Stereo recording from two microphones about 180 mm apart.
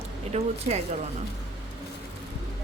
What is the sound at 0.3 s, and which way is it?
Speech, 40° right (ahead or behind).